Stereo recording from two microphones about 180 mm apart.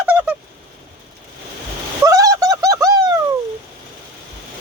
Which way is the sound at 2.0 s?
20° right (ahead or behind).